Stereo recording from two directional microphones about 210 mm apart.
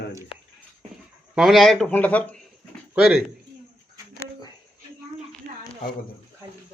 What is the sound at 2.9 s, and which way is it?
Speech, 5° right (ahead or behind).